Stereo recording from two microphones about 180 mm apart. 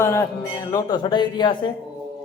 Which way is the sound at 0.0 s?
15° left (ahead or behind).